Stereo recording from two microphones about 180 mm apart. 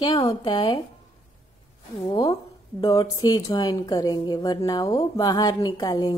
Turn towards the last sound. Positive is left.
turn(degrees=20)  # may be behind; listen again after turning